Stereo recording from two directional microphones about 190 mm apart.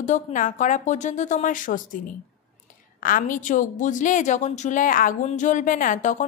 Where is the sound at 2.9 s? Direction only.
45° left (ahead or behind).